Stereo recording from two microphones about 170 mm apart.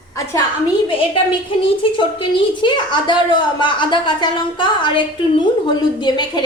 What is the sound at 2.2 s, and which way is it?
A woman's voice, 30° left (ahead or behind).